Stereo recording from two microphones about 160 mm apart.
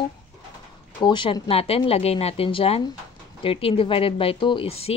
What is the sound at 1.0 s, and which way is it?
Speech, 30° left (ahead or behind).